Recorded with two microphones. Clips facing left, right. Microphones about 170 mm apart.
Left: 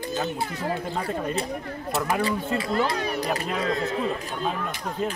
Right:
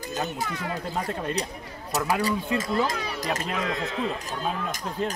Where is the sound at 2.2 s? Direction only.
45° right (ahead or behind).